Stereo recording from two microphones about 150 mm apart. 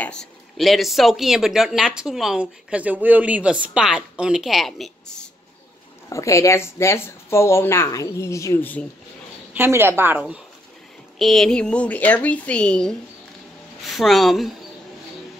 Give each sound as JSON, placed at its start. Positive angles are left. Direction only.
{"t": 0.0, "sound": "speech", "side_deg": 5}
{"t": 6.0, "sound": "speech", "side_deg": 20}
{"t": 9.5, "sound": "speech", "side_deg": -15}
{"t": 11.1, "sound": "speech", "side_deg": 0}